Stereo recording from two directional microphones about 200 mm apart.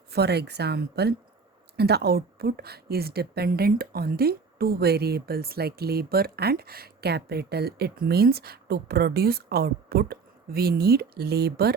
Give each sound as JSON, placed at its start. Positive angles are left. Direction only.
{"t": 0.1, "sound": "speech", "side_deg": -55}